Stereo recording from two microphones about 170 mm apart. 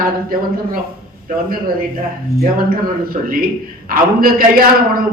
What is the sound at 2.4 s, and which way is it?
A woman's voice, 55° right (ahead or behind).